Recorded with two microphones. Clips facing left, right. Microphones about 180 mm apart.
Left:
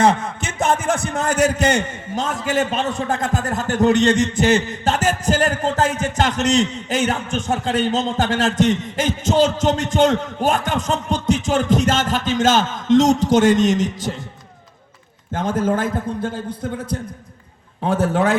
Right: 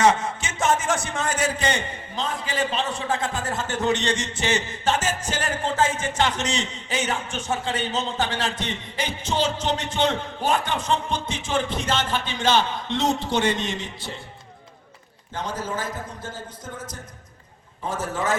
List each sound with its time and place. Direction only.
0.7 s a man's voice: 60° left (ahead or behind)
1.5 s a man's voice: 45° left (ahead or behind)
15.3 s a man's voice: 50° left (ahead or behind)